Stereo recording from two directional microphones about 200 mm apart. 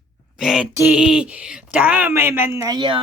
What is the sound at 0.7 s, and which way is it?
Speech, 5° right (ahead or behind).